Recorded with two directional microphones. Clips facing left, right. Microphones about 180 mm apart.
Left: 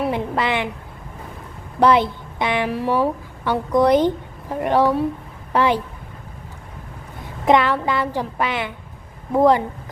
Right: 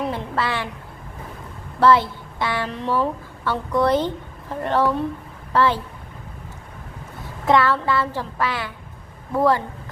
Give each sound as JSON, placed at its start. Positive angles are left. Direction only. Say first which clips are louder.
{"t": 0.0, "sound": "a sound", "louder": "left 3 dB", "side_deg": 15}
{"t": 1.8, "sound": "a woman's voice", "louder": "left 1 dB", "side_deg": 20}
{"t": 7.4, "sound": "a woman's voice", "louder": "left 2 dB", "side_deg": 20}